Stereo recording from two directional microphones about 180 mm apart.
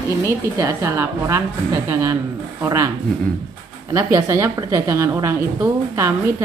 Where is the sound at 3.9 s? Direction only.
15° right (ahead or behind).